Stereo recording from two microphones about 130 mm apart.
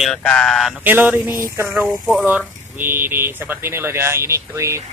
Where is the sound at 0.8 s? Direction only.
15° right (ahead or behind).